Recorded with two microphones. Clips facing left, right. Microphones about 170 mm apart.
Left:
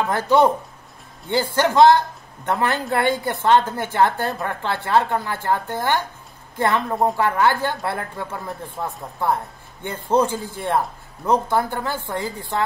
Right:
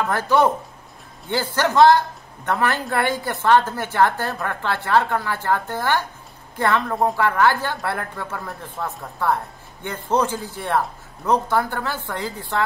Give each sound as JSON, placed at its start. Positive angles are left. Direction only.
{"t": 0.0, "sound": "a woman's voice", "side_deg": 20}